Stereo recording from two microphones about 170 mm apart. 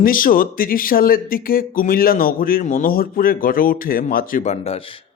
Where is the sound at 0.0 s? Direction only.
55° left (ahead or behind).